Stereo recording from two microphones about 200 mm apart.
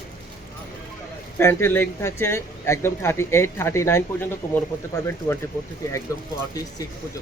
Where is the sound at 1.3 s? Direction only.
10° left (ahead or behind).